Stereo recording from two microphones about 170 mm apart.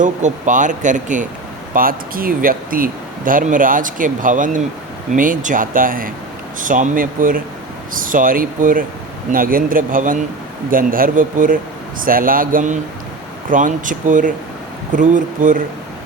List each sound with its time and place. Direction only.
0.0 s speech: 45° right (ahead or behind)